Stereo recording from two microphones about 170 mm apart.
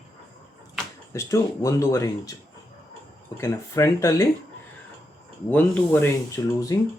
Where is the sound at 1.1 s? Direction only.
20° left (ahead or behind).